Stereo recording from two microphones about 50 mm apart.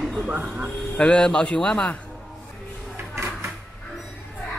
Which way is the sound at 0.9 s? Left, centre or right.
Centre.